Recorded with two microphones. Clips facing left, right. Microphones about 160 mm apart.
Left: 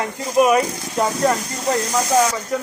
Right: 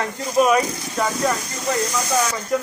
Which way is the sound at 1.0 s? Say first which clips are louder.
Left 3 dB; 35° left (ahead or behind).